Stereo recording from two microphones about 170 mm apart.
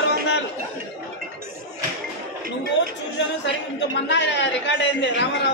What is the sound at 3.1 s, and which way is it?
Speech, 90° left.